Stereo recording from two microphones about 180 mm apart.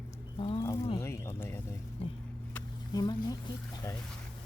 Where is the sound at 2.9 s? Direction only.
20° left (ahead or behind).